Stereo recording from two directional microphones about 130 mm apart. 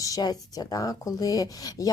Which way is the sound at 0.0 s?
30° left (ahead or behind).